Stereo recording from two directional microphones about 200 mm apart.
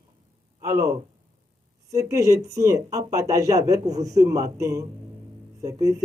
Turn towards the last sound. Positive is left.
turn(degrees=-15)  # may be behind; listen again after turning